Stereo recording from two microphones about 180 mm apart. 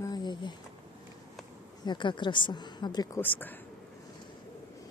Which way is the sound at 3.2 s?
10° left (ahead or behind).